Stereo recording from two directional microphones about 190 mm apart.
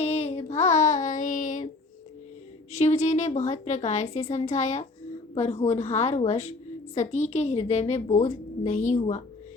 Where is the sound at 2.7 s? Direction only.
35° left (ahead or behind).